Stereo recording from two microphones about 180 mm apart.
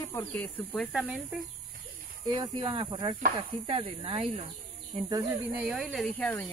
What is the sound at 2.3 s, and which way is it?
Speech, 25° right (ahead or behind).